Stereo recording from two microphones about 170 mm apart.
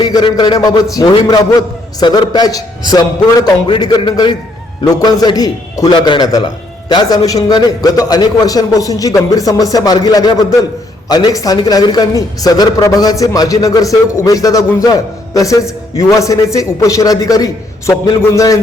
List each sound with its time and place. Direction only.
0.0 s a man's voice: 25° left (ahead or behind)